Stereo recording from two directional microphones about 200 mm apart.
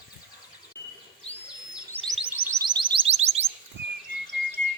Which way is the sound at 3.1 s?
30° right (ahead or behind).